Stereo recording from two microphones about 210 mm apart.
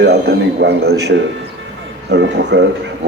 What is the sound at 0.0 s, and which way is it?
A man's voice, 50° right (ahead or behind).